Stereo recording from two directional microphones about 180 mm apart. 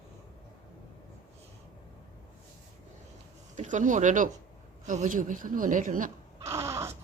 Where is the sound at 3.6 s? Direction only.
45° right (ahead or behind).